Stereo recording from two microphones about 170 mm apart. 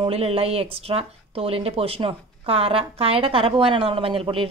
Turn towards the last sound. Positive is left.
turn(degrees=-30)  # may be behind; listen again after turning